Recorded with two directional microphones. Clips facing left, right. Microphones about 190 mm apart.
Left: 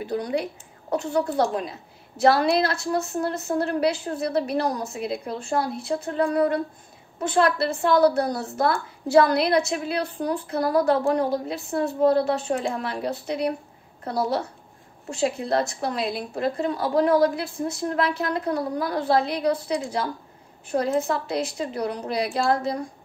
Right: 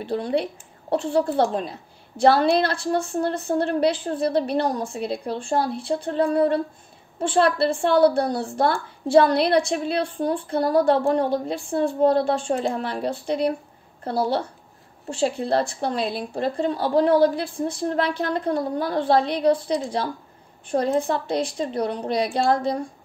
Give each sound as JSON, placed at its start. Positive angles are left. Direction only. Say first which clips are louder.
{"t": 0.0, "sound": "a woman's voice", "louder": "right 2 dB", "side_deg": -30}